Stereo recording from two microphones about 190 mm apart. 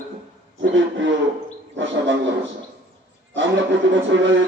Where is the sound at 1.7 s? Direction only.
75° right (ahead or behind).